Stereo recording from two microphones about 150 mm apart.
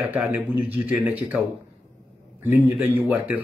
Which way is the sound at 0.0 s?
10° right (ahead or behind).